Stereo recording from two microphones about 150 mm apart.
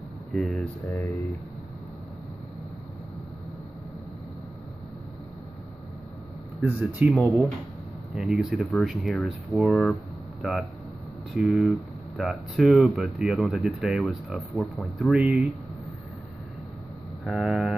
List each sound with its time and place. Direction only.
0.3 s speech: centre (ahead or behind)
0.8 s speech: 20° left (ahead or behind)
6.6 s speech: 10° right (ahead or behind)
11.3 s speech: centre (ahead or behind)
17.2 s speech: centre (ahead or behind)